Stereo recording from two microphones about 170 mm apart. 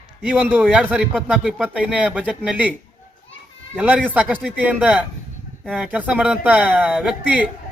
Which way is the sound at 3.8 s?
10° right (ahead or behind).